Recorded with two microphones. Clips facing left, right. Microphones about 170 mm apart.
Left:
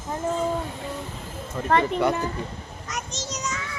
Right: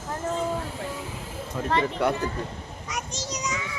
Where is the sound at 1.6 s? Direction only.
5° right (ahead or behind).